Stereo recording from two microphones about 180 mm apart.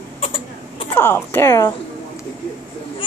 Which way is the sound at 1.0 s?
10° left (ahead or behind).